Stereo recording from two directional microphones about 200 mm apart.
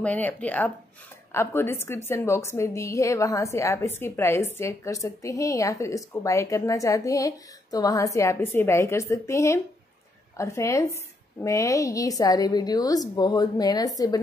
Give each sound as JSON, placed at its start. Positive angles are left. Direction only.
{"t": 0.0, "sound": "a woman's voice", "side_deg": 5}